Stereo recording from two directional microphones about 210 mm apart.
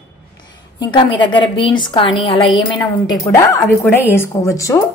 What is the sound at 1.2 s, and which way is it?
A woman's voice, 20° left (ahead or behind).